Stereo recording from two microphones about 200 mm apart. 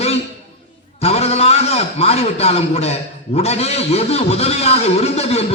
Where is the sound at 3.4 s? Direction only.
30° left (ahead or behind).